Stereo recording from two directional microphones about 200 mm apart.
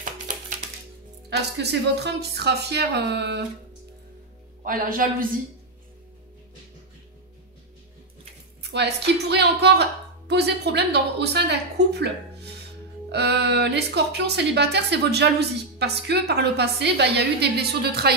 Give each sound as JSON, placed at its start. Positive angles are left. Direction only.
{"t": 1.3, "sound": "a woman's voice", "side_deg": -55}
{"t": 4.6, "sound": "a man's voice", "side_deg": -45}
{"t": 8.6, "sound": "a woman's voice", "side_deg": -55}
{"t": 13.1, "sound": "a woman's voice", "side_deg": -55}